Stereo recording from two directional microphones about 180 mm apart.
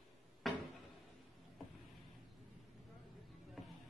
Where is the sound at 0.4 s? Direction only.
Centre (ahead or behind).